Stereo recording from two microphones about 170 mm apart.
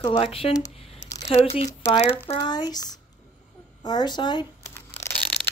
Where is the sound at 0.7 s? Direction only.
35° left (ahead or behind).